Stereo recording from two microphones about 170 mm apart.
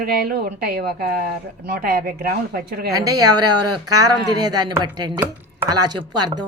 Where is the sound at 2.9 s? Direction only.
20° right (ahead or behind).